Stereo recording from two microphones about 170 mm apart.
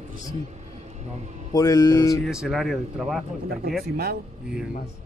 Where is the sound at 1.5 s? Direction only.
20° left (ahead or behind).